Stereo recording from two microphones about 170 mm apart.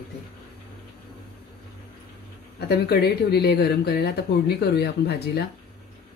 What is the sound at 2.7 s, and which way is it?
Speech, 70° left (ahead or behind).